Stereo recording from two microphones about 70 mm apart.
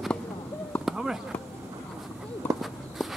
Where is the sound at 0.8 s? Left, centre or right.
Centre.